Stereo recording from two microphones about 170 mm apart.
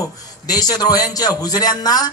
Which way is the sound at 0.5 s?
20° left (ahead or behind).